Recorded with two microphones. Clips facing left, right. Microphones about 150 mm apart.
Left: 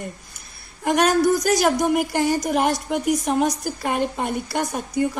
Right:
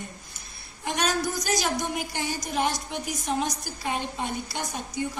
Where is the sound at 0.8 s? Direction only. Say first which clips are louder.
Left 10 dB; 65° left (ahead or behind).